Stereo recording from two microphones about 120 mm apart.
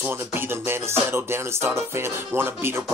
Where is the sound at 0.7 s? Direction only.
20° right (ahead or behind).